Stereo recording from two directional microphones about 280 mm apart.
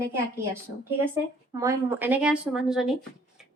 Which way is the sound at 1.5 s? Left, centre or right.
Centre.